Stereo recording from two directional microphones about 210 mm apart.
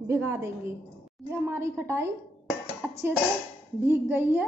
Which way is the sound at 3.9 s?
10° right (ahead or behind).